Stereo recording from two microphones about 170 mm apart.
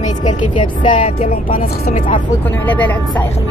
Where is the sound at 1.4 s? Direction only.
60° left (ahead or behind).